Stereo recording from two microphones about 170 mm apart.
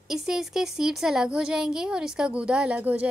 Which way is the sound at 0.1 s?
5° right (ahead or behind).